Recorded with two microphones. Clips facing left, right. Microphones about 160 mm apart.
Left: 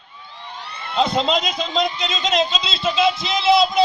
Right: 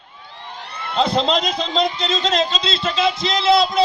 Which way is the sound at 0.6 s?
55° right (ahead or behind).